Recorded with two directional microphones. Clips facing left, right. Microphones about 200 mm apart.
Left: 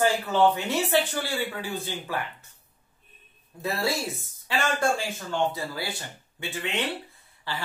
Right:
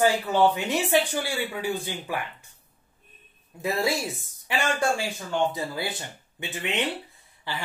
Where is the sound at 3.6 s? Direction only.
15° right (ahead or behind).